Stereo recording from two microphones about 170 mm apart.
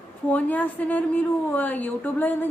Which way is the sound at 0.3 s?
10° left (ahead or behind).